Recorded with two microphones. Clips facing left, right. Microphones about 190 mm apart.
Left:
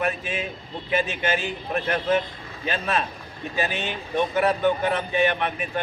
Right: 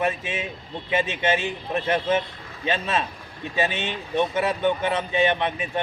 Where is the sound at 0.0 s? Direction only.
25° right (ahead or behind).